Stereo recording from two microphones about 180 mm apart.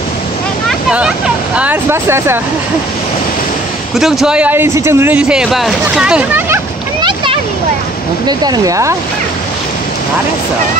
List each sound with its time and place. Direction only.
0.7 s vehicle: 5° right (ahead or behind)
1.6 s speech: 10° right (ahead or behind)
3.9 s speech: centre (ahead or behind)
7.0 s a sound: 25° right (ahead or behind)
8.3 s speech: 20° right (ahead or behind)